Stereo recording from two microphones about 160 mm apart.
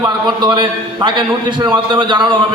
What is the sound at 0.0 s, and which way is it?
A man's voice, 30° right (ahead or behind).